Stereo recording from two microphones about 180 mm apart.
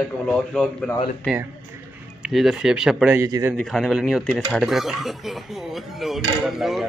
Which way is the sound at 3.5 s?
Centre (ahead or behind).